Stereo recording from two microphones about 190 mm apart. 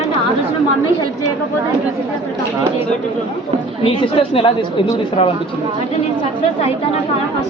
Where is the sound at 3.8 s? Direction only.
30° left (ahead or behind).